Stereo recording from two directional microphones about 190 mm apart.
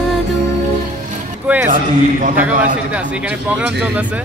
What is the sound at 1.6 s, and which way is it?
Speech, 45° right (ahead or behind).